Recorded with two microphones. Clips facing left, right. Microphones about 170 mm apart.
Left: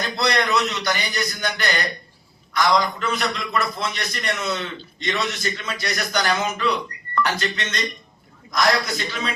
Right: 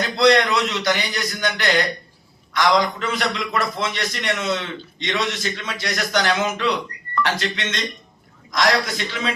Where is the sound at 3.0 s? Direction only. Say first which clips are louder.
Right 1 dB; 90° right.